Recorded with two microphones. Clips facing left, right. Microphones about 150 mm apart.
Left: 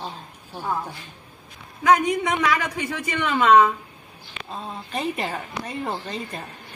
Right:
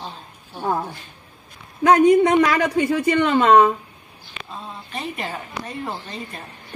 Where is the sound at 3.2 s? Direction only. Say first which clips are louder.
Right 1 dB; 35° right (ahead or behind).